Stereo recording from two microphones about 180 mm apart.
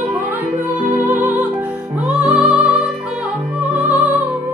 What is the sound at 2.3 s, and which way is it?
Music, 35° right (ahead or behind).